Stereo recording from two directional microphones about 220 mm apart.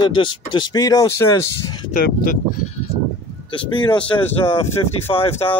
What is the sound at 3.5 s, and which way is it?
Speech, 20° left (ahead or behind).